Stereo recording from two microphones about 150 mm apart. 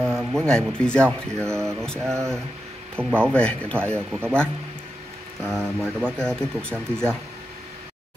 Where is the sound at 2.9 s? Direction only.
5° left (ahead or behind).